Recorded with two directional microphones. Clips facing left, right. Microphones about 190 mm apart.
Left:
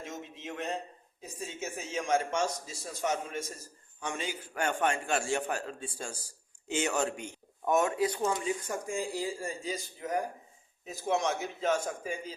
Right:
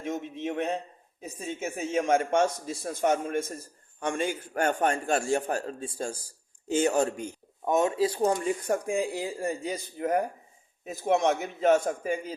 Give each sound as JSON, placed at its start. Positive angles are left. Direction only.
{"t": 0.0, "sound": "a sound", "side_deg": -55}
{"t": 1.2, "sound": "a man's voice", "side_deg": -55}
{"t": 7.6, "sound": "speech", "side_deg": -20}
{"t": 8.3, "sound": "speech", "side_deg": -55}